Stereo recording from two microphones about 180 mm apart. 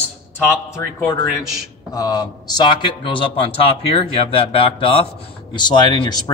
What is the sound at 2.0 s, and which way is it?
A man's voice, 20° left (ahead or behind).